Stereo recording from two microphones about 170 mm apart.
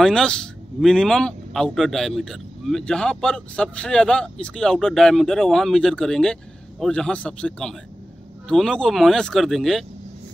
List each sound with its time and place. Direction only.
0.0 s speech: 5° left (ahead or behind)